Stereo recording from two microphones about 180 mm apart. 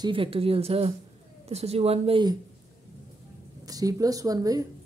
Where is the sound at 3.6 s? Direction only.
20° right (ahead or behind).